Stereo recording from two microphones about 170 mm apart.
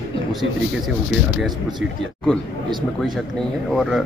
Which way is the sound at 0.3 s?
Centre (ahead or behind).